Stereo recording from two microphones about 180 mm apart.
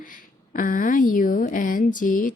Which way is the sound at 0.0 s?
50° left (ahead or behind).